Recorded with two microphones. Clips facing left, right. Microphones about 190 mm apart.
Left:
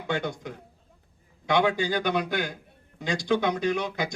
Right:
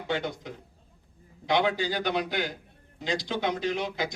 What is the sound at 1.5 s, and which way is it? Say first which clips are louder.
Speech: left 2 dB; 50° left (ahead or behind).